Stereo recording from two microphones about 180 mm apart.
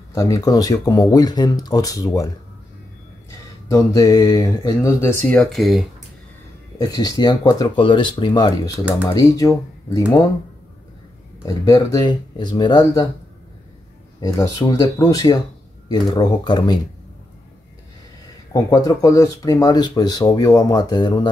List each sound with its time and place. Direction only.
0.1 s speech: 20° left (ahead or behind)
3.6 s speech: 20° left (ahead or behind)
5.4 s speech: centre (ahead or behind)
6.8 s speech: 20° left (ahead or behind)
11.4 s speech: 20° left (ahead or behind)
14.2 s speech: 20° left (ahead or behind)
18.5 s speech: 20° left (ahead or behind)